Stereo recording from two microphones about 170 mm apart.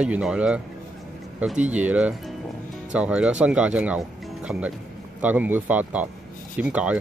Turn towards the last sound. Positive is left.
turn(degrees=-5)  # may be behind; listen again after turning